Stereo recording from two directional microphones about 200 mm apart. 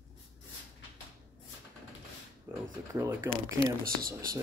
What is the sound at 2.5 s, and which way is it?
Speech, 10° right (ahead or behind).